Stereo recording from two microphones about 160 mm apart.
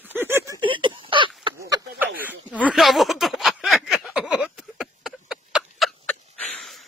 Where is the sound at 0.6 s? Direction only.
30° right (ahead or behind).